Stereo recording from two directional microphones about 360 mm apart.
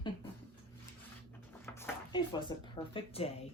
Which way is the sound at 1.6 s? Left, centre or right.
Centre.